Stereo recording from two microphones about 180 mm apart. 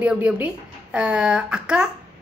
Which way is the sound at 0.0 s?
10° right (ahead or behind).